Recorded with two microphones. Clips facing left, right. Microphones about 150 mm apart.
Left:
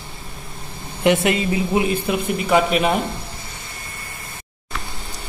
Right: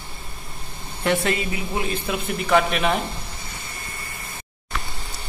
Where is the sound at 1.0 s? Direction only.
20° left (ahead or behind).